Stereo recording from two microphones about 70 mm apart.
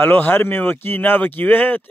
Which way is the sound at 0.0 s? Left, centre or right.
Left.